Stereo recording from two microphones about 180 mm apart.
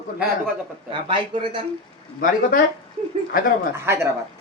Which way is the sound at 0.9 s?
25° right (ahead or behind).